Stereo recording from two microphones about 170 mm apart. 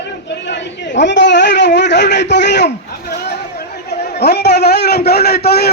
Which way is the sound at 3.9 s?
80° left.